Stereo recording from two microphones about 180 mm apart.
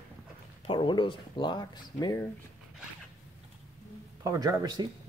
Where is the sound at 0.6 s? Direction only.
25° left (ahead or behind).